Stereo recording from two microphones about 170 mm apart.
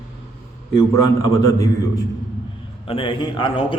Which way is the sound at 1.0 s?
20° left (ahead or behind).